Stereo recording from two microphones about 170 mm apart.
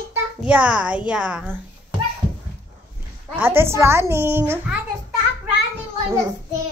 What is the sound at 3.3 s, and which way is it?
A child's voice, 15° right (ahead or behind).